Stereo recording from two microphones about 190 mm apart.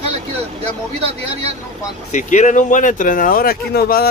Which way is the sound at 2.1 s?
40° left (ahead or behind).